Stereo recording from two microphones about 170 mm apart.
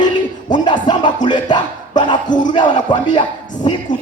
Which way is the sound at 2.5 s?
25° left (ahead or behind).